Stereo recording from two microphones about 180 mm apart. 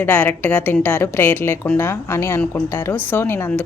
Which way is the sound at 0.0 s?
10° left (ahead or behind).